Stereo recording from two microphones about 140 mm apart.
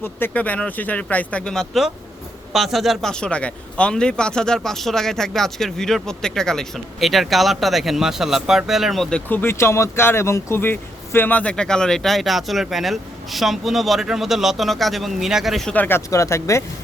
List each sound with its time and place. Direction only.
0.0 s speech: 15° left (ahead or behind)
15.7 s speech: 15° left (ahead or behind)